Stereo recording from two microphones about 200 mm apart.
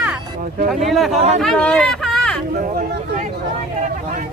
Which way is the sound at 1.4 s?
5° left (ahead or behind).